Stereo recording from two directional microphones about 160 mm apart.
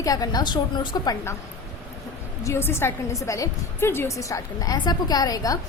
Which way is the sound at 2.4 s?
15° left (ahead or behind).